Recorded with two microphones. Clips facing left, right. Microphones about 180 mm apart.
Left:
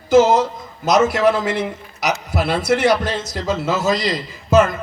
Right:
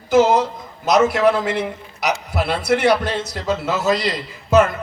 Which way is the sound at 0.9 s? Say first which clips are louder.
Even; 60° right (ahead or behind).